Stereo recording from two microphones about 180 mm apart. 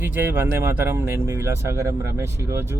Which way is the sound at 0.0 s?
10° right (ahead or behind).